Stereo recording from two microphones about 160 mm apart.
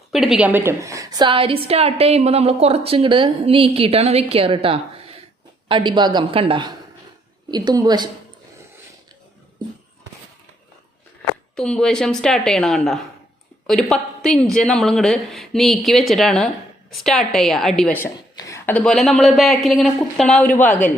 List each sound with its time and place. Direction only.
0.1 s a woman's voice: centre (ahead or behind); by 8.1 s 25° right (ahead or behind)
11.5 s a woman's voice: 5° left (ahead or behind)
18.3 s a woman's voice: 20° left (ahead or behind)